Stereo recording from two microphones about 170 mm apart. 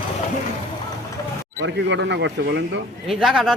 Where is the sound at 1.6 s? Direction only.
90° right.